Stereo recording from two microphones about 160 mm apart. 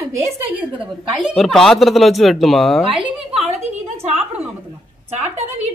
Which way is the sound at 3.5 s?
40° right (ahead or behind).